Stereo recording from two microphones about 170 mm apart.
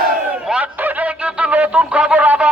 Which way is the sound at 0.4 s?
5° right (ahead or behind).